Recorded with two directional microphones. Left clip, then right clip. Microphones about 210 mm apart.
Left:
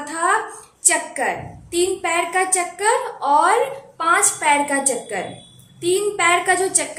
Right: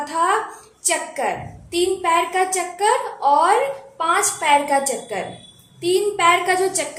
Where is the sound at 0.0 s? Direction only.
10° left (ahead or behind).